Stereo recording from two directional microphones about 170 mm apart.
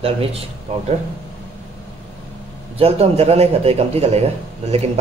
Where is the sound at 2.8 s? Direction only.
35° right (ahead or behind).